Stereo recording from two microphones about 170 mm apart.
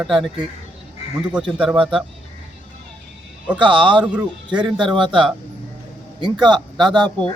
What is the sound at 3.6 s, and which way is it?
A man's voice, 30° right (ahead or behind).